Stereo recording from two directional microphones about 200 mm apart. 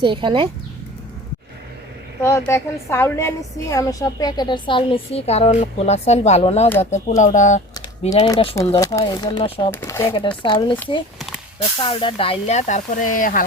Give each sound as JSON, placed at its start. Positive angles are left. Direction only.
{"t": 0.0, "sound": "speech", "side_deg": -25}
{"t": 2.2, "sound": "a woman's voice", "side_deg": 15}
{"t": 9.7, "sound": "speech", "side_deg": 15}
{"t": 10.1, "sound": "a woman's voice", "side_deg": 25}
{"t": 11.8, "sound": "speech", "side_deg": 25}